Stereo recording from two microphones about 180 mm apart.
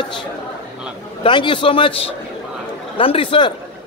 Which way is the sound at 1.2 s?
25° left (ahead or behind).